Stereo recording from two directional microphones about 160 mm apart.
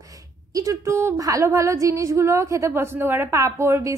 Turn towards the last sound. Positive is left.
turn(degrees=-15)  # may be behind; listen again after turning